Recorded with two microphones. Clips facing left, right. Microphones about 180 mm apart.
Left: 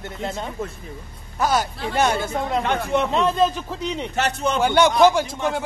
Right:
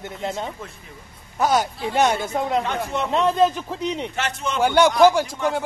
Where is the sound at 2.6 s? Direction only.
60° left (ahead or behind).